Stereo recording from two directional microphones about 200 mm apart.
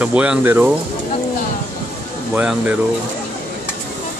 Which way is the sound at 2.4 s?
5° right (ahead or behind).